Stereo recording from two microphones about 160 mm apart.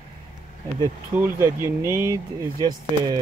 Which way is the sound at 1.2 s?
15° right (ahead or behind).